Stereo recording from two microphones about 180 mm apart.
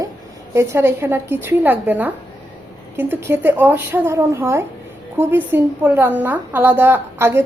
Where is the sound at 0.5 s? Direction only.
15° right (ahead or behind).